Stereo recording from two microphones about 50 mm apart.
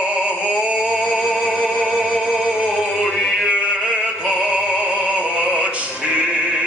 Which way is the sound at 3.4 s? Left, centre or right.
Right.